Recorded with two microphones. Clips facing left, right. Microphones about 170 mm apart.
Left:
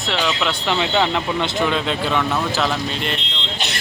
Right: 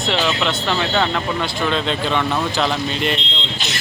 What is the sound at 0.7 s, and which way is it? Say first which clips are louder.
Speech: left 2 dB; 15° left (ahead or behind).